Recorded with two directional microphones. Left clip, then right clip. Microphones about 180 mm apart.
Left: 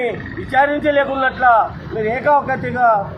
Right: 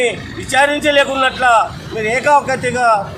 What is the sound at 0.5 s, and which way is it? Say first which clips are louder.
A man's voice: right 2 dB; 15° right (ahead or behind).